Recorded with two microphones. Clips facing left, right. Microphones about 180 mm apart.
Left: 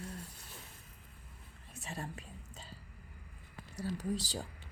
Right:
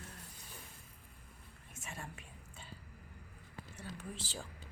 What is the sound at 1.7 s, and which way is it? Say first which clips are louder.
Whispering: left 5 dB; 35° left (ahead or behind).